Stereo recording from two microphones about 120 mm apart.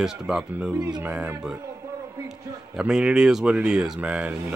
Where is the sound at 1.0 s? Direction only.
15° right (ahead or behind).